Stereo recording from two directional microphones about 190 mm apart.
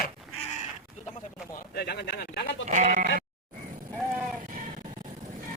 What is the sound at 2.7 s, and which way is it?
Bleat, 40° right (ahead or behind).